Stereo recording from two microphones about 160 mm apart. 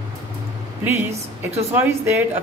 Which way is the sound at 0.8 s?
15° right (ahead or behind).